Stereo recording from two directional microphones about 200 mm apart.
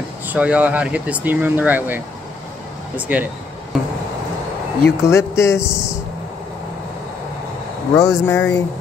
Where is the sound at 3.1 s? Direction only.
10° right (ahead or behind).